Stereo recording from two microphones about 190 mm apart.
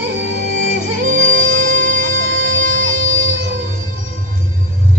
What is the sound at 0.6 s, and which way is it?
Music, 45° right (ahead or behind).